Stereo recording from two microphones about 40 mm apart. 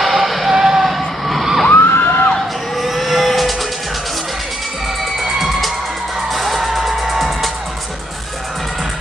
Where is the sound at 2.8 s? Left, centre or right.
Centre.